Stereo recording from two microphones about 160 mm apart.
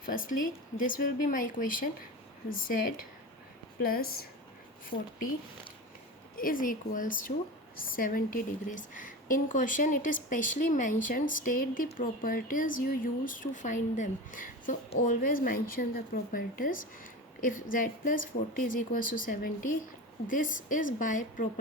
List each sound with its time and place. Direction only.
0.0 s a woman's voice: 60° left (ahead or behind)
4.9 s speech: 40° left (ahead or behind)
6.3 s a woman's voice: 60° left (ahead or behind)